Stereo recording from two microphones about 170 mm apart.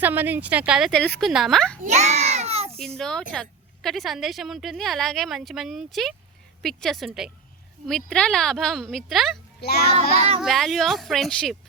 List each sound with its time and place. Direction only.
0.0 s a woman's voice: 10° right (ahead or behind)
1.8 s a sound: 40° right (ahead or behind)
3.0 s a woman's voice: 5° left (ahead or behind)
9.6 s music: 70° left (ahead or behind)
10.2 s speech: 35° right (ahead or behind)
10.4 s a woman's voice: centre (ahead or behind)